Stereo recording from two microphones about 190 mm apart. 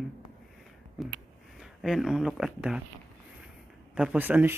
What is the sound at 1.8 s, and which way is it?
Speech, centre (ahead or behind).